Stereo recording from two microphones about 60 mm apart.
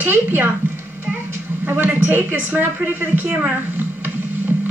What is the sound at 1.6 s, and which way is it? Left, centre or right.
A woman's voice, right.